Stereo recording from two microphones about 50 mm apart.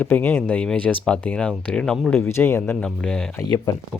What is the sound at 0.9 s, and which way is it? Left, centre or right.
Speech, centre.